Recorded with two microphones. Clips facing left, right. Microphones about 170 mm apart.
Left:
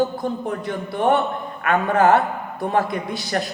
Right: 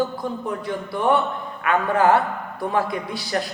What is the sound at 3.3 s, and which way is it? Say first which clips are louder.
Speech: left 1 dB; 50° left (ahead or behind).